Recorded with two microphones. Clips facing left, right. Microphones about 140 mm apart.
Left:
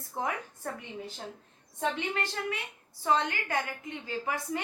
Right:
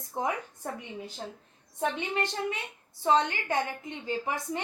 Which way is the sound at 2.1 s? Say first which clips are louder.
Right 3 dB; 20° right (ahead or behind).